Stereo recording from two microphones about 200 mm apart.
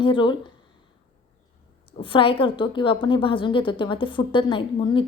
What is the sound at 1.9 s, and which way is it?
A woman's voice, 25° left (ahead or behind).